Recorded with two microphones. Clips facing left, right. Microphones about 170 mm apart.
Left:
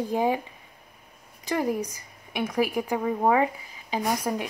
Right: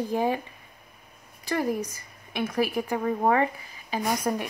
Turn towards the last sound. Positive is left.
turn(degrees=15)  # may be behind; listen again after turning